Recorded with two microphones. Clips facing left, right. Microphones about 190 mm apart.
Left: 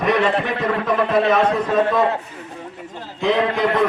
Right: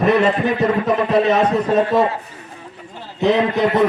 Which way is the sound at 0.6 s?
25° right (ahead or behind).